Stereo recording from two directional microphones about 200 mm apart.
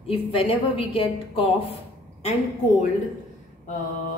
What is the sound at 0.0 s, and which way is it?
A woman's voice, 30° left (ahead or behind).